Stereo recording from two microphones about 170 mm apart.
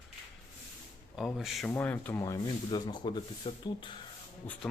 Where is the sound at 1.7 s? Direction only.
10° left (ahead or behind); by 4.0 s 30° left (ahead or behind).